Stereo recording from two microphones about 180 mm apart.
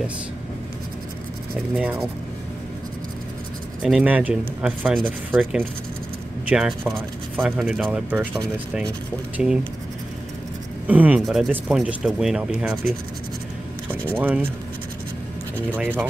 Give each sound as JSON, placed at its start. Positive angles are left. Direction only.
{"t": 1.8, "sound": "speech", "side_deg": -5}
{"t": 3.8, "sound": "speech", "side_deg": -5}
{"t": 10.9, "sound": "speech", "side_deg": -10}
{"t": 14.2, "sound": "speech", "side_deg": -10}
{"t": 15.8, "sound": "speech", "side_deg": -10}